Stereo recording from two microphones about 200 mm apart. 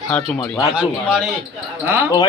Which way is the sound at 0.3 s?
15° left (ahead or behind).